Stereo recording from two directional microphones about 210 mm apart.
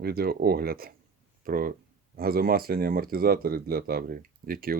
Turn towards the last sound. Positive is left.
turn(degrees=-45)  # may be behind; listen again after turning